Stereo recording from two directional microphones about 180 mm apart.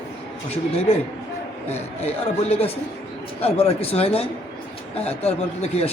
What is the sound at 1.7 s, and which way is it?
Speech, 35° left (ahead or behind).